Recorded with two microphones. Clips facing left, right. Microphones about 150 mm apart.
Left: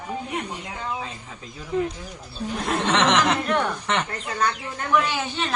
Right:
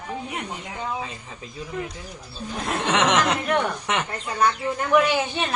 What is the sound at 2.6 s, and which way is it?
Speech, 10° right (ahead or behind).